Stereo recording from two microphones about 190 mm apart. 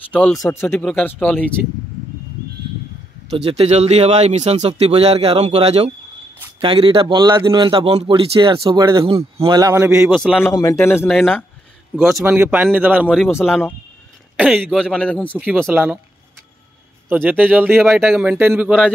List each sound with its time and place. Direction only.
0.3 s speech: 15° left (ahead or behind)
3.3 s a man's voice: 30° right (ahead or behind)
9.0 s a man's voice: 30° right (ahead or behind); by 10.2 s 10° right (ahead or behind)
10.4 s speech: 15° left (ahead or behind)
11.1 s a man's voice: centre (ahead or behind)
12.2 s speech: 10° right (ahead or behind)
14.3 s speech: 5° right (ahead or behind)
15.3 s speech: 5° right (ahead or behind)
17.1 s speech: 10° right (ahead or behind)